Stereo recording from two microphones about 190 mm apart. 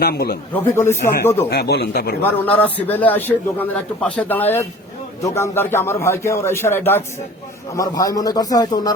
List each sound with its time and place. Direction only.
0.0 s a man's voice: 55° left (ahead or behind)
0.5 s a man's voice: 15° left (ahead or behind)
1.5 s speech: 60° left (ahead or behind)
2.2 s a man's voice: 10° left (ahead or behind)